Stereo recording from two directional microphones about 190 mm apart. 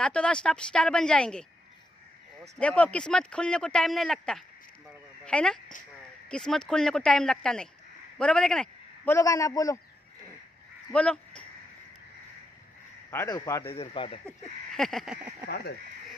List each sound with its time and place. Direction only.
0.0 s speech: 5° left (ahead or behind)
2.6 s a man's voice: 5° left (ahead or behind)
10.9 s a sound: 5° left (ahead or behind)
13.1 s speech: 15° left (ahead or behind)
13.7 s speech: 30° left (ahead or behind)
14.2 s speech: centre (ahead or behind)